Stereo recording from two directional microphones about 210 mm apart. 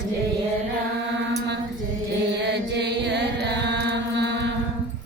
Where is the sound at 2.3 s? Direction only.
55° right (ahead or behind).